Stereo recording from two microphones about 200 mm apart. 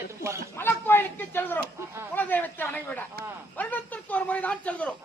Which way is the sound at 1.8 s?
15° right (ahead or behind).